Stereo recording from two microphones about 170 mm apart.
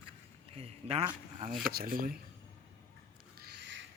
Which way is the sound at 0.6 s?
35° right (ahead or behind).